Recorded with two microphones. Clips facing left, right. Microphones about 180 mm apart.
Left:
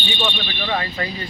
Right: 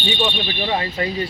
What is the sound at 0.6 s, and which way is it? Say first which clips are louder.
Speech: right 1 dB; 25° right (ahead or behind).